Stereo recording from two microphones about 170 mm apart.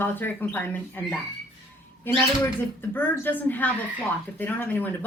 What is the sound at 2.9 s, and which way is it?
Speech, 10° left (ahead or behind).